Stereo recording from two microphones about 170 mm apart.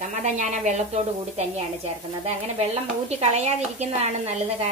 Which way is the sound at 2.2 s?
40° right (ahead or behind).